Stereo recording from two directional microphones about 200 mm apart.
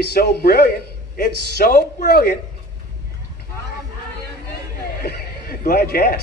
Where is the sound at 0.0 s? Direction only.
50° left (ahead or behind).